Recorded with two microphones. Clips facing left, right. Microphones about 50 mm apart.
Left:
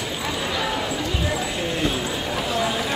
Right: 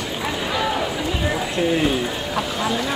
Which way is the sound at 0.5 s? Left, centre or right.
Centre.